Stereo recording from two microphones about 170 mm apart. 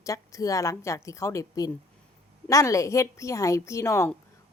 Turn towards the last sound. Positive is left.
turn(degrees=15)  # may be behind; listen again after turning